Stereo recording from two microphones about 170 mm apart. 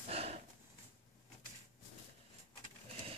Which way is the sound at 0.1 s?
35° right (ahead or behind).